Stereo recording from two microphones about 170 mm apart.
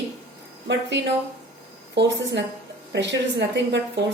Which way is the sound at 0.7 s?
90° right.